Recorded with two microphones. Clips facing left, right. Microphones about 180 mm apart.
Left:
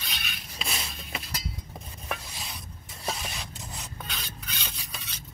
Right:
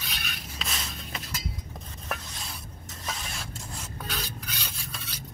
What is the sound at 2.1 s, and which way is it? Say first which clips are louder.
Stir: even; centre (ahead or behind).